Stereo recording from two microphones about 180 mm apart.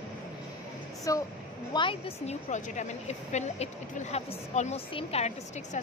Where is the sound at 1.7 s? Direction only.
30° left (ahead or behind).